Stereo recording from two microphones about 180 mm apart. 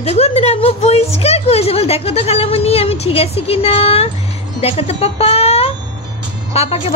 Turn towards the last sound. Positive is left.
turn(degrees=35)  # may be behind; listen again after turning